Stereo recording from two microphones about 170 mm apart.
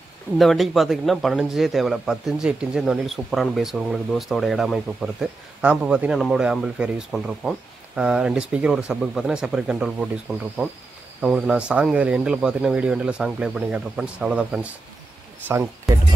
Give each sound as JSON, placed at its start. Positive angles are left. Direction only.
{"t": 0.4, "sound": "a man's voice", "side_deg": 0}
{"t": 11.1, "sound": "a man's voice", "side_deg": -5}
{"t": 15.4, "sound": "a sound", "side_deg": -15}